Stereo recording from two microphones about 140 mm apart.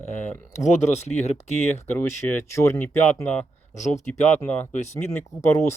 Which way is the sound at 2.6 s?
15° left (ahead or behind).